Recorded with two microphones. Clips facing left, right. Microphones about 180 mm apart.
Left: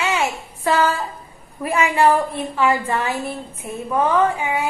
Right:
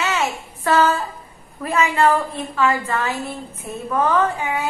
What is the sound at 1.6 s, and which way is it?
A woman's voice, 10° left (ahead or behind).